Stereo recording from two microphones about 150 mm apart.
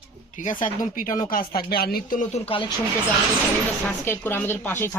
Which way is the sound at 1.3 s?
80° left.